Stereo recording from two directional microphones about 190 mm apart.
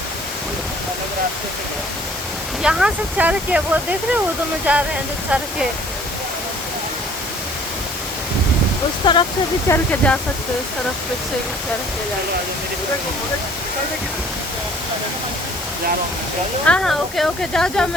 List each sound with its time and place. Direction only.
2.6 s speech: 5° right (ahead or behind)
9.0 s speech: 25° left (ahead or behind)
9.6 s speech: 10° left (ahead or behind)
16.6 s speech: 5° left (ahead or behind)